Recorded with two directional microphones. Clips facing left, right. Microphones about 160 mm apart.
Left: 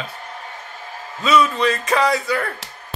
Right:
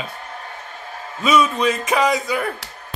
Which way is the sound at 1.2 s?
15° right (ahead or behind).